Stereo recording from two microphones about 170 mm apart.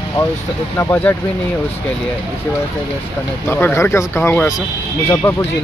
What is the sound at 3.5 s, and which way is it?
Speech, 15° left (ahead or behind).